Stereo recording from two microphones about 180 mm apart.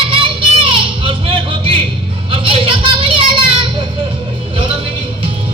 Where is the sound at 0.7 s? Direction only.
30° right (ahead or behind).